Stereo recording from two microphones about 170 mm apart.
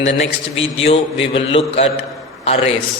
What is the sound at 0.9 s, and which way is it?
A man's voice, 35° left (ahead or behind).